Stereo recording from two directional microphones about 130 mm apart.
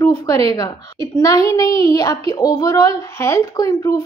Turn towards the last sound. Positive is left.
turn(degrees=30)  # may be behind; listen again after turning